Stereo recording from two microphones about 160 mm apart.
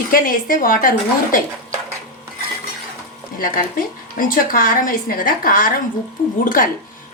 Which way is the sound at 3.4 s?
60° left (ahead or behind).